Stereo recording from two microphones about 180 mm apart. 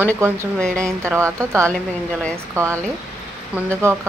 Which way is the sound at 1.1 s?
15° right (ahead or behind).